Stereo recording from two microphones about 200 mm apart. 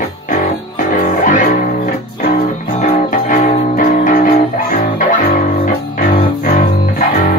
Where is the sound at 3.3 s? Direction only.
40° left (ahead or behind).